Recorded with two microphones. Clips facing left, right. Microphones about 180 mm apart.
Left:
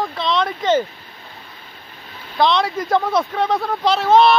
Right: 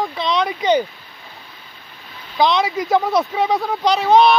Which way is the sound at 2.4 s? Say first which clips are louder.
Even; centre (ahead or behind).